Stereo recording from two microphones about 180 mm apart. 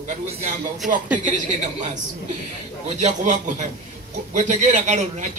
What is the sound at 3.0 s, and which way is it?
A man's voice, 40° right (ahead or behind).